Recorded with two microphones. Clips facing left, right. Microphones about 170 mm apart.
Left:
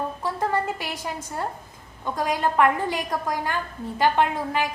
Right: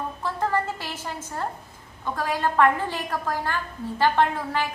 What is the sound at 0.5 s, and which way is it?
A woman's voice, 15° left (ahead or behind).